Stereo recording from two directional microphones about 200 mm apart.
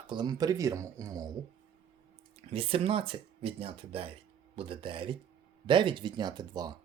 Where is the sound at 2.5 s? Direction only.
30° right (ahead or behind).